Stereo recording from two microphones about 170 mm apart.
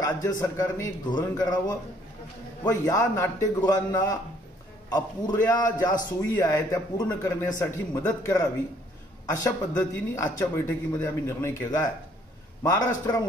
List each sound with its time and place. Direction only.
0.0 s a man's voice: 20° left (ahead or behind)
2.8 s a man's voice: 20° left (ahead or behind)